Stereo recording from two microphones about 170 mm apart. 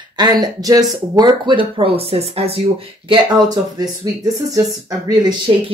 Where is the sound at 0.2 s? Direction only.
25° right (ahead or behind).